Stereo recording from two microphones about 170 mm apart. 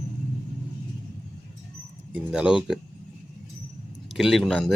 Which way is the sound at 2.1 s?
5° right (ahead or behind).